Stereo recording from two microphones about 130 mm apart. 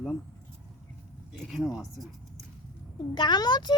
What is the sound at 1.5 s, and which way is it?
Speech, centre (ahead or behind).